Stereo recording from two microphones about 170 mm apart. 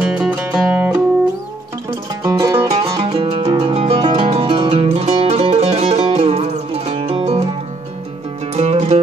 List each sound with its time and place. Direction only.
0.0 s music: 5° right (ahead or behind)
2.2 s music: 20° right (ahead or behind); by 7.4 s 35° right (ahead or behind)
8.5 s music: 40° right (ahead or behind)